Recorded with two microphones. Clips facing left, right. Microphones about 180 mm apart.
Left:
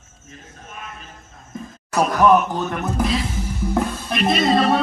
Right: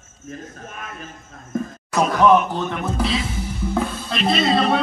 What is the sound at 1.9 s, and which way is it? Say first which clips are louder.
A man's voice: even; 5° left (ahead or behind).